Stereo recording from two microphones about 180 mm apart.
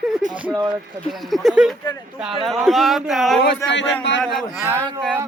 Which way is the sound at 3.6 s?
85° left.